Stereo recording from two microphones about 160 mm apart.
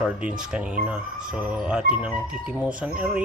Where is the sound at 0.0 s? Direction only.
5° right (ahead or behind).